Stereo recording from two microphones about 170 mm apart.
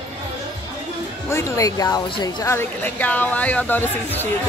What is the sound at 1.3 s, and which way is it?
Speech, 20° left (ahead or behind).